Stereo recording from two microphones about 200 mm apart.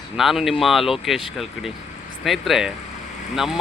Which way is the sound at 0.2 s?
Centre (ahead or behind).